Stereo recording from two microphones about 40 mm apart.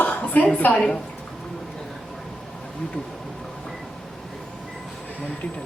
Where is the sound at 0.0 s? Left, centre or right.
Left.